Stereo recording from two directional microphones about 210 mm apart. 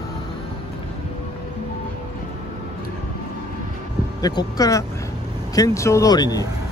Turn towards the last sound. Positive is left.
turn(degrees=20)  # may be behind; listen again after turning